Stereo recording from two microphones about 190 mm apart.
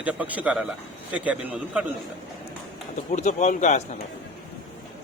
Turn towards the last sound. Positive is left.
turn(degrees=40)  # may be behind; listen again after turning